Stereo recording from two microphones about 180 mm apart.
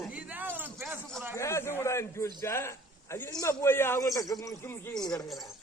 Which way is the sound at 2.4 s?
15° left (ahead or behind).